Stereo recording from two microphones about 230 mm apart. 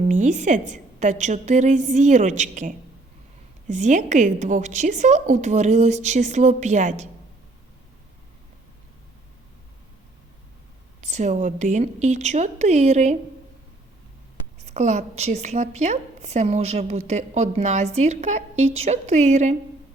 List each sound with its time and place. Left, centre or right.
0.0 s a woman's voice: right
11.0 s a woman's voice: right
14.6 s a woman's voice: right